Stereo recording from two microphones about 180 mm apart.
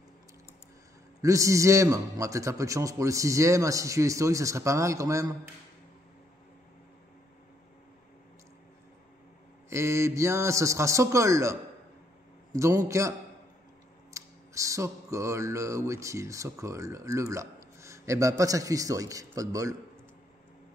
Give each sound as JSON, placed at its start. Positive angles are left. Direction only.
{"t": 1.2, "sound": "a man's voice", "side_deg": -15}
{"t": 9.7, "sound": "a man's voice", "side_deg": -15}
{"t": 12.5, "sound": "a man's voice", "side_deg": -15}
{"t": 14.1, "sound": "a sound", "side_deg": -15}
{"t": 18.4, "sound": "a man's voice", "side_deg": -20}